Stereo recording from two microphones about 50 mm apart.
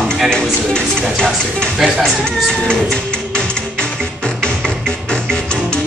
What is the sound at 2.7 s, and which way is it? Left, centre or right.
Music, centre.